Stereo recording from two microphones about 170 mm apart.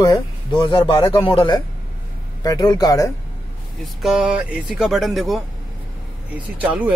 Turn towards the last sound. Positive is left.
turn(degrees=-10)  # may be behind; listen again after turning